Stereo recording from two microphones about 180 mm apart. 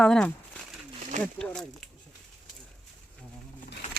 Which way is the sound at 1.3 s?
5° left (ahead or behind).